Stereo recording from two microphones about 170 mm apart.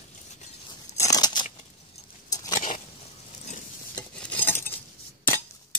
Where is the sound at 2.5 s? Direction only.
50° left (ahead or behind).